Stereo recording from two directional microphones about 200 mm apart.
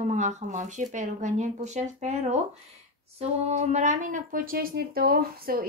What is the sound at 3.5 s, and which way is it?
Speech, 35° right (ahead or behind).